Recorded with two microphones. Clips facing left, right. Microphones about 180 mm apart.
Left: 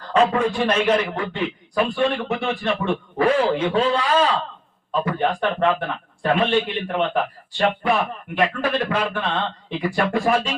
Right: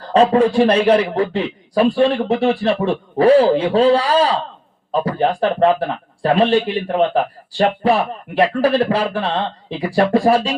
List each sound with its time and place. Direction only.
0.1 s speech: 35° right (ahead or behind)